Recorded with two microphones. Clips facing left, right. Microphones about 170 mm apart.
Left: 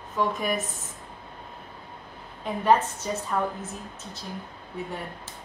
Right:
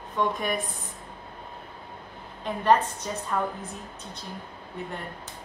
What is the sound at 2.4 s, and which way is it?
Speech, 5° left (ahead or behind).